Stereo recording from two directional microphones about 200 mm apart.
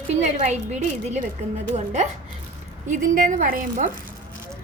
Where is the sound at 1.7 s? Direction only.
35° right (ahead or behind).